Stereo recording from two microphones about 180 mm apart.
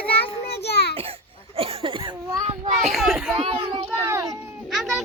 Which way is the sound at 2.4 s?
40° right (ahead or behind).